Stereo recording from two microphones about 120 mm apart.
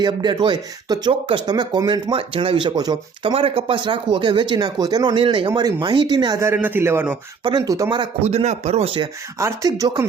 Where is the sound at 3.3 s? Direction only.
50° right (ahead or behind).